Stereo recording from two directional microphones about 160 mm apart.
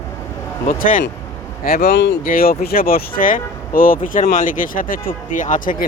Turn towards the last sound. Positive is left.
turn(degrees=55)  # may be behind; listen again after turning